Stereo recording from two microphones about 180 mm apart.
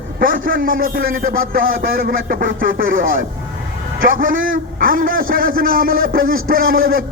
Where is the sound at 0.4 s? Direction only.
50° right (ahead or behind).